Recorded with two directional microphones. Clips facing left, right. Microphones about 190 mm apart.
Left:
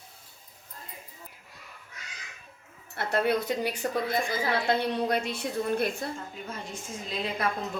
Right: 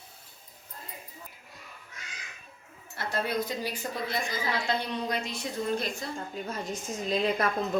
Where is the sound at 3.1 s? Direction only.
60° left (ahead or behind).